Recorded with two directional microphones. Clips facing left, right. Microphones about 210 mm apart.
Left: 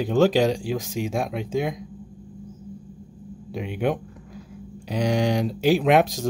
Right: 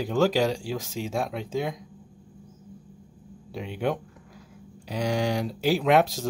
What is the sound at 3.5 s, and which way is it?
Speech, 15° left (ahead or behind).